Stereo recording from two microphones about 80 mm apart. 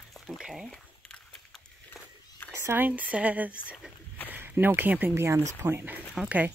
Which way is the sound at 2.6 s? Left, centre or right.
Right.